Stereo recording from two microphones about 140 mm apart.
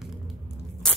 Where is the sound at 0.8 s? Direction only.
5° left (ahead or behind).